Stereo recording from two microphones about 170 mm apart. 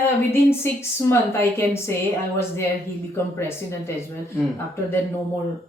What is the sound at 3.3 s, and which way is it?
Speech, 15° left (ahead or behind).